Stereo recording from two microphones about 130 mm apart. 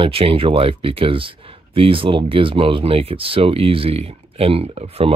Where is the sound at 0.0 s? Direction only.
45° right (ahead or behind).